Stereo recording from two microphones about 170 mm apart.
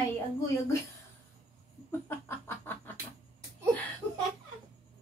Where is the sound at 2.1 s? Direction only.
10° left (ahead or behind).